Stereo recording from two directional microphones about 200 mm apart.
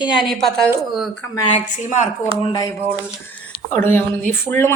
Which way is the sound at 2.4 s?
20° left (ahead or behind).